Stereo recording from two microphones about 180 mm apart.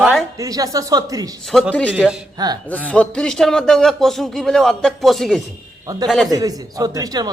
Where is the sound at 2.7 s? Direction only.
10° left (ahead or behind).